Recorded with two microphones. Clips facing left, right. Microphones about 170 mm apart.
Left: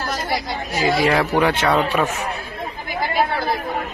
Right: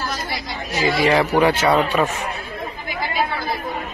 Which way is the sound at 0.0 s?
50° left (ahead or behind).